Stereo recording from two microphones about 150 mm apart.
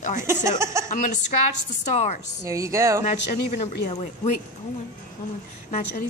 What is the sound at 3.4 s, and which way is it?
Speech, 50° left (ahead or behind).